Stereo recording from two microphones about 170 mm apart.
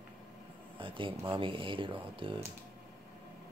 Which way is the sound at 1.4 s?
30° right (ahead or behind).